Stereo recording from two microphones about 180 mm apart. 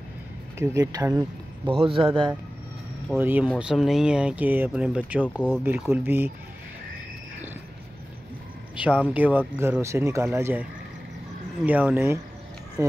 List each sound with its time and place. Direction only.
0.6 s speech: 15° right (ahead or behind)
1.7 s a man's voice: 30° right (ahead or behind)
3.2 s speech: 10° right (ahead or behind)
5.2 s speech: 5° left (ahead or behind)
5.6 s speech: 10° right (ahead or behind)
8.7 s speech: 5° right (ahead or behind)